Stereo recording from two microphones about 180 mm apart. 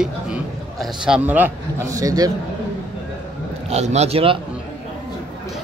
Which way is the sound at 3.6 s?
35° right (ahead or behind).